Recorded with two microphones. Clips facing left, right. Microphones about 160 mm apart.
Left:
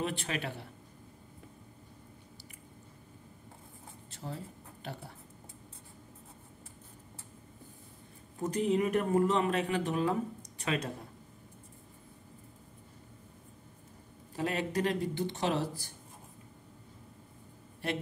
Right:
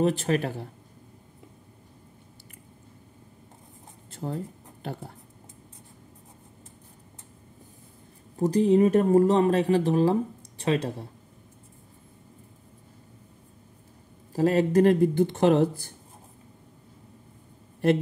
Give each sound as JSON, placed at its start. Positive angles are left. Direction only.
{"t": 0.0, "sound": "speech", "side_deg": -40}
{"t": 4.1, "sound": "a sound", "side_deg": -50}
{"t": 8.4, "sound": "speech", "side_deg": -35}
{"t": 14.3, "sound": "speech", "side_deg": -40}